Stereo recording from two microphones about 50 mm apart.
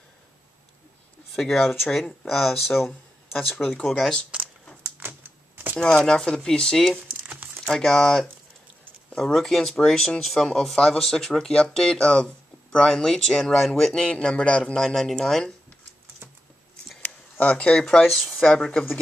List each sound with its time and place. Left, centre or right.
1.3 s speech: centre
4.8 s typing: right
5.9 s speech: centre
7.0 s crumpling: right
7.6 s speech: centre
14.1 s speech: left
14.8 s speech: centre
17.0 s speech: left
18.0 s speech: centre
18.4 s speech: centre